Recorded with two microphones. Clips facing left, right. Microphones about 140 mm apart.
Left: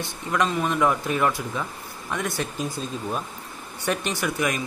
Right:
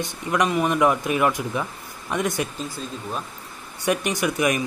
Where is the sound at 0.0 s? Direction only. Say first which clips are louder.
Right 2 dB; 15° right (ahead or behind).